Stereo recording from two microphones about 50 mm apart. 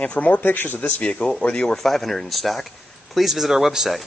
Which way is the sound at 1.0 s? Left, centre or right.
Centre.